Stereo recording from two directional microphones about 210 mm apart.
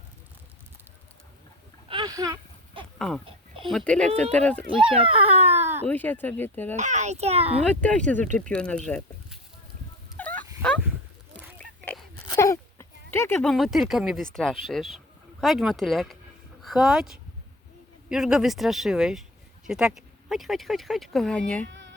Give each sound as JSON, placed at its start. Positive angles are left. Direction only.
{"t": 1.9, "sound": "a sound", "side_deg": -20}
{"t": 3.7, "sound": "speech", "side_deg": 5}
{"t": 4.8, "sound": "baby cry", "side_deg": -25}
{"t": 5.9, "sound": "speech", "side_deg": 10}
{"t": 6.7, "sound": "a child's voice", "side_deg": -35}
{"t": 7.7, "sound": "speech", "side_deg": 5}
{"t": 10.2, "sound": "a sound", "side_deg": 5}
{"t": 14.3, "sound": "speech", "side_deg": 0}
{"t": 21.7, "sound": "music", "side_deg": -60}